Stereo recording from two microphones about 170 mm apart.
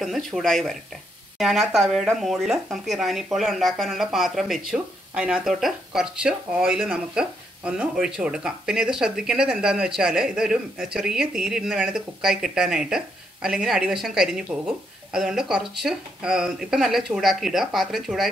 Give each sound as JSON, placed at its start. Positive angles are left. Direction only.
{"t": 0.0, "sound": "speech", "side_deg": 0}